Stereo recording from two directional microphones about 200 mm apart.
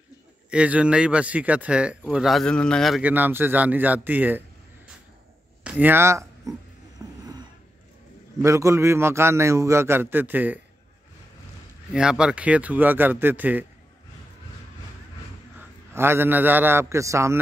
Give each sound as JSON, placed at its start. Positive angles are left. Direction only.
{"t": 0.5, "sound": "speech", "side_deg": -5}
{"t": 5.6, "sound": "speech", "side_deg": -5}
{"t": 7.0, "sound": "a sound", "side_deg": -15}
{"t": 8.4, "sound": "speech", "side_deg": -15}
{"t": 11.9, "sound": "speech", "side_deg": -5}
{"t": 15.9, "sound": "speech", "side_deg": -10}